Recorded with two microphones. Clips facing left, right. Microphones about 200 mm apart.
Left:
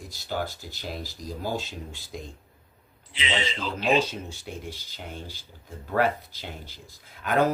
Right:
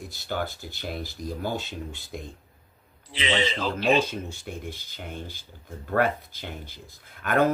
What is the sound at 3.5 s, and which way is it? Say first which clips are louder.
Speech: left 2 dB; 55° right (ahead or behind).